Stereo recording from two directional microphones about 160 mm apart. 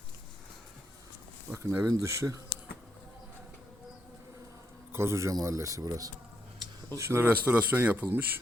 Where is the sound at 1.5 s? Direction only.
15° right (ahead or behind).